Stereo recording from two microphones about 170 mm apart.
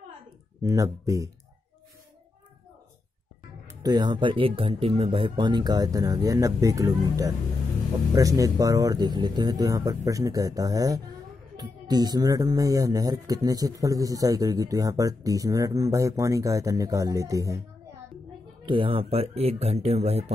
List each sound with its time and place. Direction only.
0.6 s speech: 20° right (ahead or behind)
3.6 s speech: 25° right (ahead or behind)
18.7 s speech: 30° right (ahead or behind)